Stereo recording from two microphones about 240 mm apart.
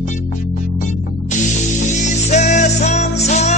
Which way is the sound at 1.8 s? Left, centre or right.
Left.